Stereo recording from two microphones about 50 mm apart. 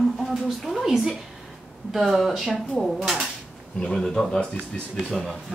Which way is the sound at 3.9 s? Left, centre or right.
Centre.